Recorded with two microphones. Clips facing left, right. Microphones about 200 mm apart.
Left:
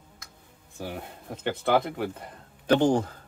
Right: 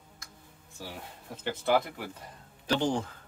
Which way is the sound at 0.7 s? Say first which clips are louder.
Left 7 dB; 60° left (ahead or behind).